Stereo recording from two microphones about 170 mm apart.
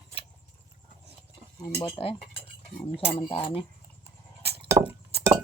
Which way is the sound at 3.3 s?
30° left (ahead or behind).